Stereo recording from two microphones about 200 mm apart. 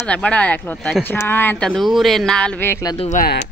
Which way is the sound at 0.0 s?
5° left (ahead or behind).